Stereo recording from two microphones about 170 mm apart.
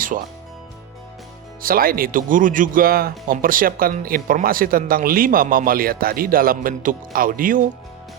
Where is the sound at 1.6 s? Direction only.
60° right (ahead or behind).